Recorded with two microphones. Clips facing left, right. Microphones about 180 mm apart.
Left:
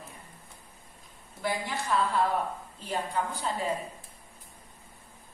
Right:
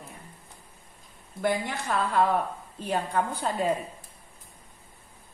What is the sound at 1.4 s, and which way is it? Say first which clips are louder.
Speech: right 4 dB; 55° right (ahead or behind).